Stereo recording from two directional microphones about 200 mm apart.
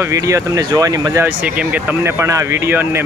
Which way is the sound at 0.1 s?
15° right (ahead or behind).